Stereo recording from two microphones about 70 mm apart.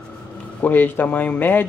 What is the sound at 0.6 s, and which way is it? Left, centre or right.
Speech, left.